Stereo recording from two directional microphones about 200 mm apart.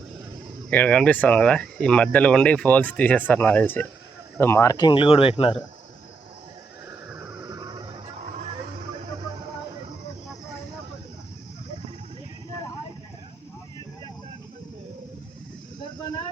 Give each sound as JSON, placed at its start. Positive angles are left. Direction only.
{"t": 0.7, "sound": "speech", "side_deg": 5}
{"t": 7.4, "sound": "music", "side_deg": -20}